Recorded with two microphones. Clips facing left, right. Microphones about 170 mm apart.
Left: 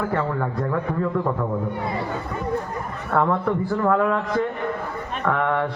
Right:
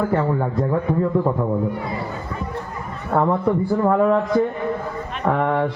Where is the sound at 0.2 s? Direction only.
25° right (ahead or behind).